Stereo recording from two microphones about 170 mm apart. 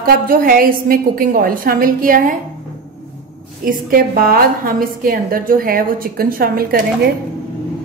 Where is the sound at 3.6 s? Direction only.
55° right (ahead or behind).